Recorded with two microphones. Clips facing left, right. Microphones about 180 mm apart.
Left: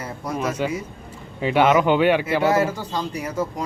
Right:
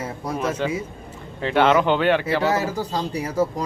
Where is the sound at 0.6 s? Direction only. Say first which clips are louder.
Even; 10° left (ahead or behind).